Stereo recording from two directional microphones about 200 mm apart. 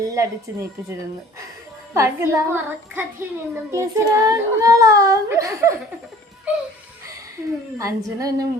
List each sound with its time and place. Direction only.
0.0 s a child's voice: 15° right (ahead or behind)
1.9 s a child's voice: 15° right (ahead or behind)
7.8 s a child's voice: 15° right (ahead or behind)